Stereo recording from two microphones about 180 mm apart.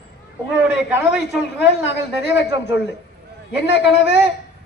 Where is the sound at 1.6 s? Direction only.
75° left (ahead or behind).